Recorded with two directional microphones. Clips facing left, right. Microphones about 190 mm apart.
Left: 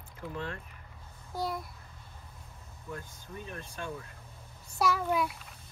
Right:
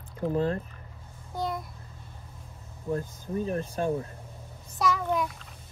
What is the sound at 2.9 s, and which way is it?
Speech, 35° right (ahead or behind).